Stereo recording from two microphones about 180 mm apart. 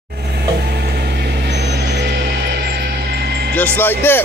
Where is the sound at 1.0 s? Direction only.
65° right (ahead or behind).